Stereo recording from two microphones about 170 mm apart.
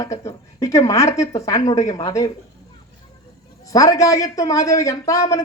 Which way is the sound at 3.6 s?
20° left (ahead or behind).